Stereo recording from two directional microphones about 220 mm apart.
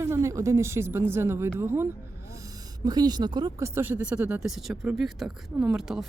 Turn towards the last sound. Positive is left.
turn(degrees=0)  # may be behind; listen again after turning